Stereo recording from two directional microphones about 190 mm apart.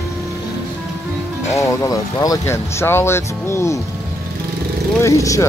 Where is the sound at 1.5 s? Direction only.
15° left (ahead or behind).